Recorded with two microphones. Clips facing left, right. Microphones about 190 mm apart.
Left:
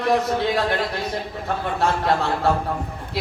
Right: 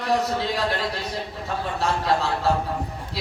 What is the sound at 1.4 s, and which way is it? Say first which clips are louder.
A woman's voice: left 3 dB; 60° left (ahead or behind).